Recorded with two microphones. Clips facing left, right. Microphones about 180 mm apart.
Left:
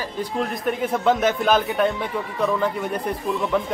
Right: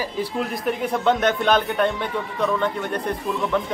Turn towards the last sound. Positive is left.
turn(degrees=0)  # may be behind; listen again after turning